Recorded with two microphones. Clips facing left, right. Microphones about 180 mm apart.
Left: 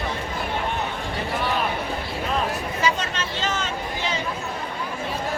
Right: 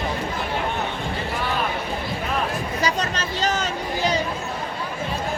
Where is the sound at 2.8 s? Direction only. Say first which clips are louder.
Even; 40° right (ahead or behind).